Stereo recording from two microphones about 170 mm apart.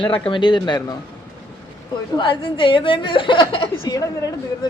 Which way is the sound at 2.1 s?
30° left (ahead or behind).